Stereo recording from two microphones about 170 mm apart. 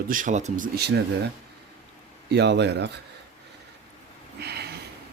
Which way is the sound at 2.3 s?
90° right.